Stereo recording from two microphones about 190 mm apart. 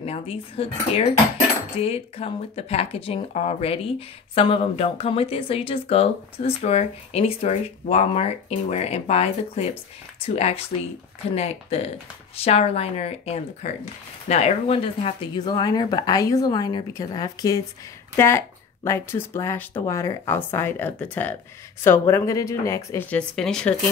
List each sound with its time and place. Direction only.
0.0 s speech: 30° left (ahead or behind); by 23.7 s 5° left (ahead or behind)